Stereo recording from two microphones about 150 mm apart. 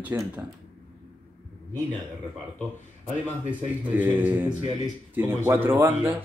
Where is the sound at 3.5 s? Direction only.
10° right (ahead or behind).